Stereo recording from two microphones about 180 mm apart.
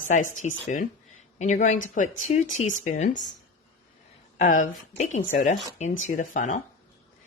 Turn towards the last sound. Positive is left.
turn(degrees=45)  # may be behind; listen again after turning